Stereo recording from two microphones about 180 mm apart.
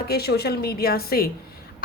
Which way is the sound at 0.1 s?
60° left (ahead or behind).